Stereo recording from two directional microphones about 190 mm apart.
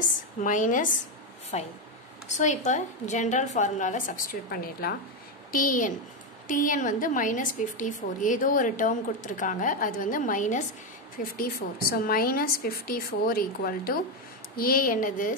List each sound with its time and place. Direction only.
0.4 s a woman's voice: 40° left (ahead or behind)